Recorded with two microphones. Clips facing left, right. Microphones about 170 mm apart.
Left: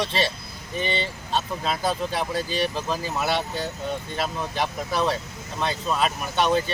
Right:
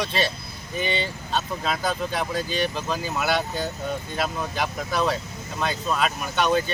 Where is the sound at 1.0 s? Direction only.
Centre (ahead or behind).